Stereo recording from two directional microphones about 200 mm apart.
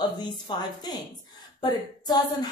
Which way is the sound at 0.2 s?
20° left (ahead or behind).